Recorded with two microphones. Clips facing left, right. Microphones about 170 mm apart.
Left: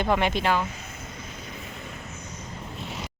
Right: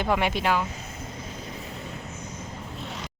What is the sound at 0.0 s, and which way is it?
Speech, 10° right (ahead or behind).